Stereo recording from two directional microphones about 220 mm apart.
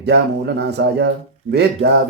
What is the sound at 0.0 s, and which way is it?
A man's voice, 50° right (ahead or behind).